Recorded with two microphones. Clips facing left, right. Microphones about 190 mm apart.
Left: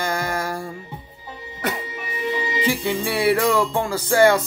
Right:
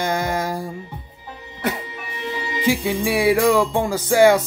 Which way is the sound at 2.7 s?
10° right (ahead or behind).